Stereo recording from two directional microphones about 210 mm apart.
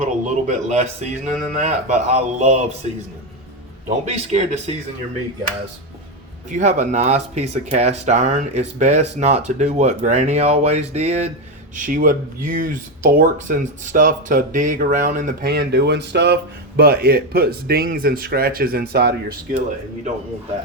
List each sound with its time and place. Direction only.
0.0 s speech: 35° right (ahead or behind)
3.8 s speech: 30° right (ahead or behind)
6.5 s speech: 35° right (ahead or behind)